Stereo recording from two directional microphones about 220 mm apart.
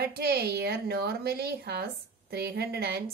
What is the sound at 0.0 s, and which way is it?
A woman's voice, 45° right (ahead or behind).